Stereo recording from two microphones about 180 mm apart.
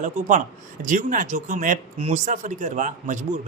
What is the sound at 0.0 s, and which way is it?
Speech, 45° right (ahead or behind).